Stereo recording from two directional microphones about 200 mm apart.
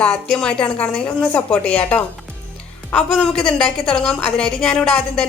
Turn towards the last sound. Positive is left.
turn(degrees=5)  # may be behind; listen again after turning